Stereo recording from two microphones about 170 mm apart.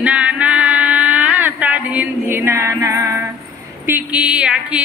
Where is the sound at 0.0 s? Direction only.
10° right (ahead or behind).